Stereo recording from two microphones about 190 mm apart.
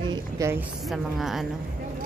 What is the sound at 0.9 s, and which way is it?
Speech, centre (ahead or behind).